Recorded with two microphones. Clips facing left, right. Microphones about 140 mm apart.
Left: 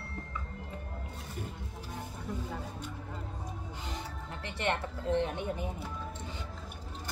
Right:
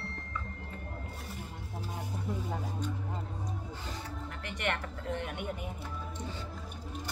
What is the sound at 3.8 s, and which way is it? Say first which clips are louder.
Speech: even; 25° left (ahead or behind).